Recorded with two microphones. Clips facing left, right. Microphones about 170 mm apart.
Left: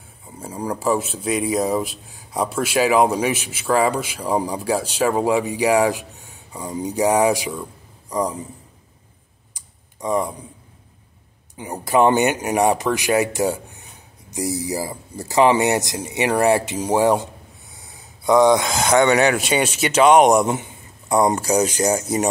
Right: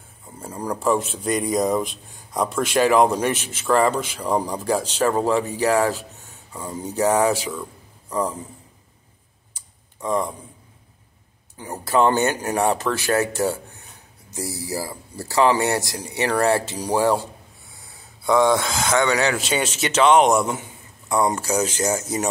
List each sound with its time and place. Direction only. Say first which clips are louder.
0.4 s a man's voice: left 1 dB; 10° left (ahead or behind)
9.5 s typing: left 1 dB; 10° left (ahead or behind)
11.5 s speech: left 2 dB; 15° left (ahead or behind)